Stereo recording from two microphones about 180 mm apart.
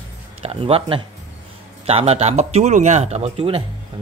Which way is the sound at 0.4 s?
35° right (ahead or behind).